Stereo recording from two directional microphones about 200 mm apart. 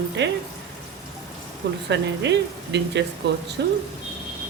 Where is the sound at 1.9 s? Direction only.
60° right (ahead or behind).